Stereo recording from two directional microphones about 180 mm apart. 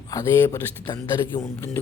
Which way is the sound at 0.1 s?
15° left (ahead or behind).